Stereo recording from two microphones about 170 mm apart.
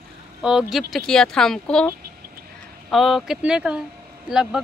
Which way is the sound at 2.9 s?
Centre (ahead or behind).